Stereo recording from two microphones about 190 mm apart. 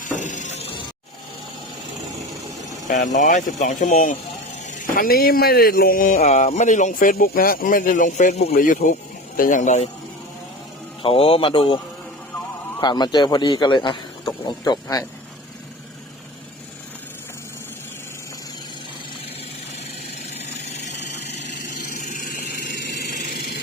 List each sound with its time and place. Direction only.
0.0 s a sound: 40° left (ahead or behind)
0.5 s music: 35° left (ahead or behind)
2.8 s speech: 40° left (ahead or behind)
11.0 s a man's voice: 30° left (ahead or behind)
12.8 s a man's voice: 25° left (ahead or behind)
20.3 s vehicle: 35° left (ahead or behind)
21.9 s vehicle: 40° left (ahead or behind)
23.0 s engine: 55° left (ahead or behind)